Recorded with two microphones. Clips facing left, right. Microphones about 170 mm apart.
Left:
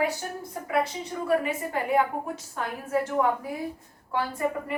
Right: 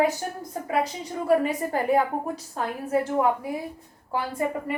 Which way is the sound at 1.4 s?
35° right (ahead or behind).